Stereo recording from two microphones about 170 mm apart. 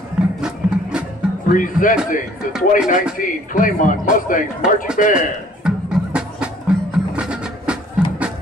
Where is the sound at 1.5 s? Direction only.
50° left (ahead or behind).